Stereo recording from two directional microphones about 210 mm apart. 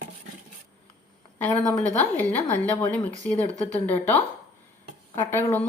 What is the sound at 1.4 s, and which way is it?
A woman's voice, 5° left (ahead or behind).